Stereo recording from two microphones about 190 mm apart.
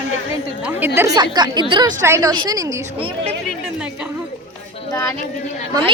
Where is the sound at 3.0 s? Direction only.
30° right (ahead or behind).